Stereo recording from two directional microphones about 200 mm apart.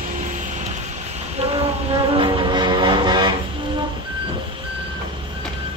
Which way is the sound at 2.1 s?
20° right (ahead or behind).